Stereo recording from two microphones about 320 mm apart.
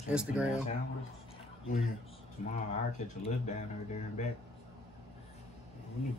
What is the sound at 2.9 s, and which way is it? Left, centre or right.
Speech, left.